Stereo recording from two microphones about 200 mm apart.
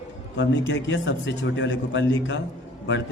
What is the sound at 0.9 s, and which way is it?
A man's voice, 60° left (ahead or behind).